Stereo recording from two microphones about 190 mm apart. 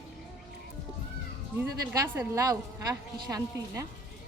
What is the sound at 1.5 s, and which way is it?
A woman's voice, 10° right (ahead or behind).